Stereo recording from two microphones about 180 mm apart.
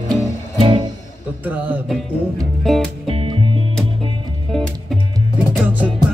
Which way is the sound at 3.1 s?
30° right (ahead or behind).